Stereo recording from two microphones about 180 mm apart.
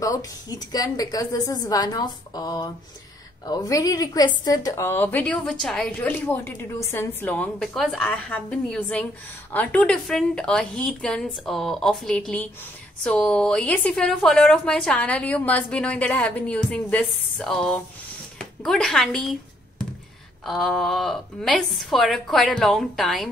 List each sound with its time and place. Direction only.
0.0 s a woman's voice: 20° left (ahead or behind); by 19.3 s centre (ahead or behind)
20.4 s a woman's voice: centre (ahead or behind)